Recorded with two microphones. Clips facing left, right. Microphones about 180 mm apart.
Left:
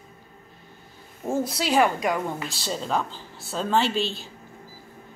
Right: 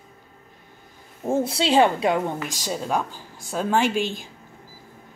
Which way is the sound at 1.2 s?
25° right (ahead or behind).